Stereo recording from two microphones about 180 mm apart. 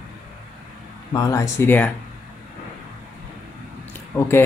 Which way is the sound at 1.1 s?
15° left (ahead or behind).